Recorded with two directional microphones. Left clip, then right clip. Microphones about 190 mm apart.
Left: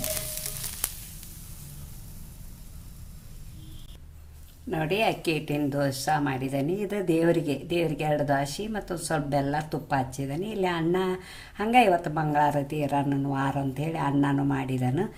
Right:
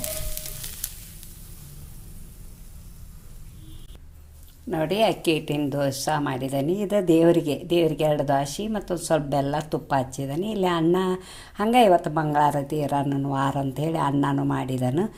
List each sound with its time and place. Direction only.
4.7 s speech: 25° right (ahead or behind)